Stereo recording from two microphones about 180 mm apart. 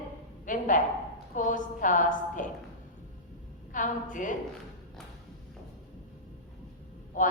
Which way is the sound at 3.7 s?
45° left (ahead or behind).